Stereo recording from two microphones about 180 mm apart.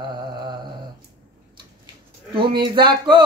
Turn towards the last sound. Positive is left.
turn(degrees=-25)  # may be behind; listen again after turning